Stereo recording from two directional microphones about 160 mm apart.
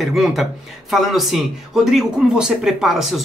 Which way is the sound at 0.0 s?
Centre (ahead or behind).